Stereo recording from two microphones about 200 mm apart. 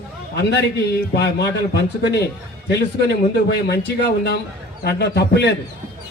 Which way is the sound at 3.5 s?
55° left (ahead or behind).